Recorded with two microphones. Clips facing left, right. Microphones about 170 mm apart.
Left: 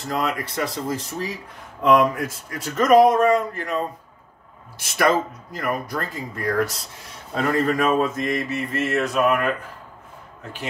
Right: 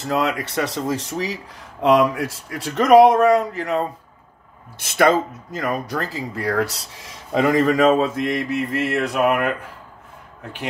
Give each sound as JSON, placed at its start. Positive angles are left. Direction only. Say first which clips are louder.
{"t": 0.0, "sound": "speech", "louder": "right 3 dB", "side_deg": -70}
{"t": 4.7, "sound": "speech", "louder": "right 3 dB", "side_deg": -60}
{"t": 8.9, "sound": "speech", "louder": "even", "side_deg": -60}